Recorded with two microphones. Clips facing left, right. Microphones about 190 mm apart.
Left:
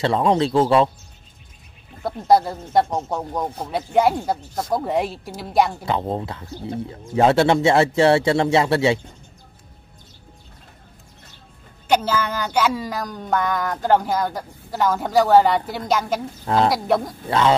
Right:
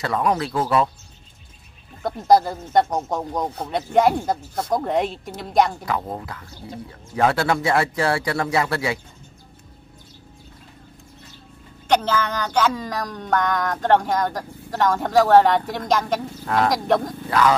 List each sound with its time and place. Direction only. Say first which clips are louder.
0.0 s a man's voice: left 4 dB; 25° left (ahead or behind)
2.0 s speech: even; centre (ahead or behind)
5.9 s a man's voice: left 3 dB; 25° left (ahead or behind)
11.9 s speech: even; 10° left (ahead or behind)
16.4 s a man's voice: left 2 dB; 25° left (ahead or behind)
16.7 s speech: even; 5° left (ahead or behind)
17.3 s a man's voice: left 1 dB; 25° left (ahead or behind)